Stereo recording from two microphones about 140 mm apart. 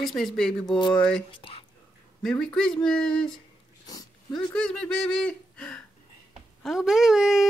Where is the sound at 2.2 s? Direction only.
5° left (ahead or behind).